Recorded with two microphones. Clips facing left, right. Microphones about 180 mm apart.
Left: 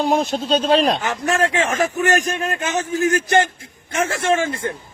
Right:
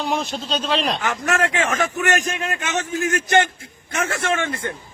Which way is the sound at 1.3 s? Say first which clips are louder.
Left 2 dB; 30° left (ahead or behind).